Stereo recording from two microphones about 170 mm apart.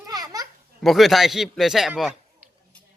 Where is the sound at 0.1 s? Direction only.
20° right (ahead or behind).